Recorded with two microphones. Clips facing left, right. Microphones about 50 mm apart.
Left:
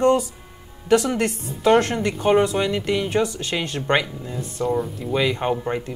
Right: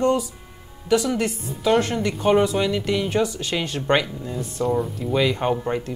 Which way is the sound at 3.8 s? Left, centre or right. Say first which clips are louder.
Right 1 dB; centre.